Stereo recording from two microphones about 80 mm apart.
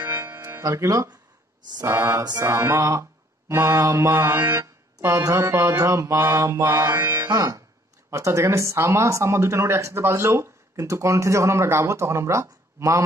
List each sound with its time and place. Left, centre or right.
0.0 s music: right
0.5 s speech: right
1.6 s a sound: right
1.9 s speech: right
6.7 s music: right
7.2 s speech: right